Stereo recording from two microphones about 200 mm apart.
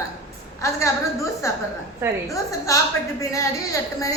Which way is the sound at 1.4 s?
15° left (ahead or behind).